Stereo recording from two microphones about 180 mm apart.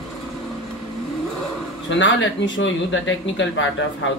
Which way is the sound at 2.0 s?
90° left.